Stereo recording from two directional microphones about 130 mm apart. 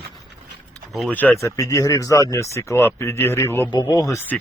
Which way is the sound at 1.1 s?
15° left (ahead or behind).